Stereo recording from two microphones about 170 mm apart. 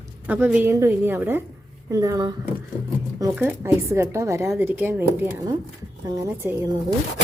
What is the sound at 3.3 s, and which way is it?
Speech, 10° right (ahead or behind).